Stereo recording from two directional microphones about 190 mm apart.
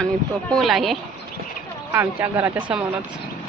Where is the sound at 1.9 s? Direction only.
10° right (ahead or behind).